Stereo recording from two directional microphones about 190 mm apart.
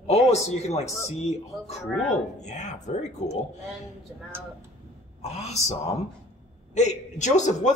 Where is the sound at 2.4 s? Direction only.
40° left (ahead or behind).